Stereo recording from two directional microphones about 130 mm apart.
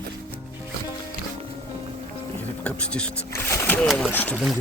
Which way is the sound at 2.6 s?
10° left (ahead or behind).